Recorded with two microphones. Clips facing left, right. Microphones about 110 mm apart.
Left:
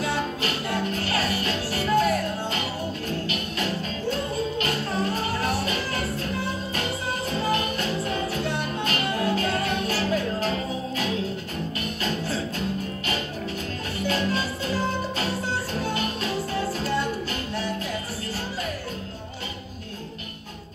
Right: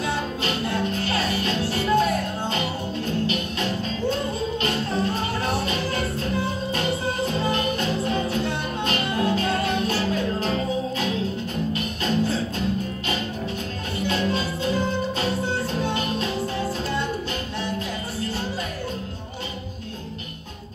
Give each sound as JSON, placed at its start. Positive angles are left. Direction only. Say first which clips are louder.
{"t": 0.4, "sound": "music", "louder": "right 2 dB", "side_deg": -25}
{"t": 4.1, "sound": "music", "louder": "left 2 dB", "side_deg": -25}
{"t": 7.5, "sound": "music", "louder": "right 2 dB", "side_deg": -25}
{"t": 12.0, "sound": "music", "louder": "right 5 dB", "side_deg": -25}
{"t": 14.0, "sound": "music", "louder": "right 1 dB", "side_deg": -20}